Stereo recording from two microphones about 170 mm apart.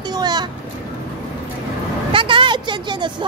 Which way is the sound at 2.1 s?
30° right (ahead or behind).